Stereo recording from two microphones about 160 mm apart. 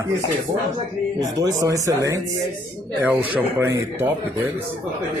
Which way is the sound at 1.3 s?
20° right (ahead or behind).